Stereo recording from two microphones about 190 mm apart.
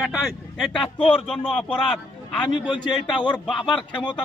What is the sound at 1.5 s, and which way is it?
A man's voice, 10° left (ahead or behind).